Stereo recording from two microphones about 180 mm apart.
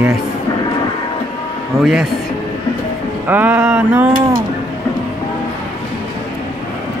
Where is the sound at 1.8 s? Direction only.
Centre (ahead or behind).